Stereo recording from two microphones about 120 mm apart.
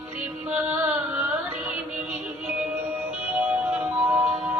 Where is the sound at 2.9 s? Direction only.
15° right (ahead or behind).